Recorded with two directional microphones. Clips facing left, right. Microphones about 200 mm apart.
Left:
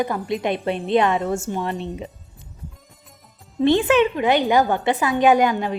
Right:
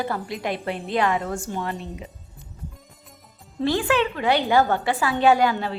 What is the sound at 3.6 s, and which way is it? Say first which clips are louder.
A woman's voice: left 5 dB; 20° left (ahead or behind).